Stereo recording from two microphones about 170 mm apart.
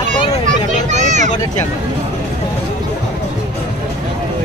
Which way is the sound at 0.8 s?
45° right (ahead or behind).